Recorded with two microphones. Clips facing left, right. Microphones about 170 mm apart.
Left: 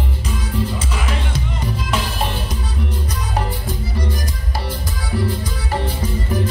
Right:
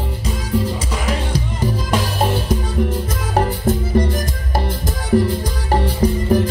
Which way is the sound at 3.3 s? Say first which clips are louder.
Right 8 dB; 50° right (ahead or behind).